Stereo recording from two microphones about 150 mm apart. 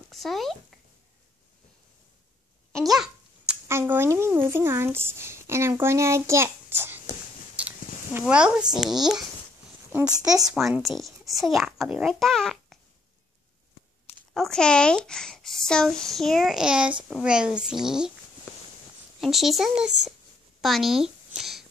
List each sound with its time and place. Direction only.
0.1 s speech: centre (ahead or behind)
2.7 s a sound: centre (ahead or behind)
3.6 s a child's voice: 15° right (ahead or behind)
10.1 s speech: 25° right (ahead or behind)
10.5 s speech: 5° right (ahead or behind)
14.3 s speech: 5° left (ahead or behind)
19.2 s speech: centre (ahead or behind)